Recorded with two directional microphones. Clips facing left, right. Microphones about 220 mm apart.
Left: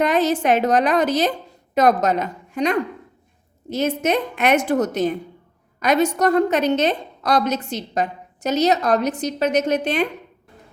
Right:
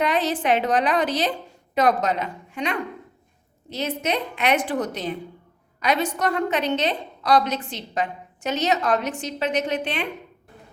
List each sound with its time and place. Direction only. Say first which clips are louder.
0.0 s a woman's voice: left 5 dB; 45° left (ahead or behind)